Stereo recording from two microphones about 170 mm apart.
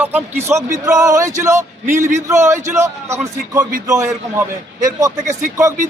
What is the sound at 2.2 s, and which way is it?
A man's voice, 15° right (ahead or behind).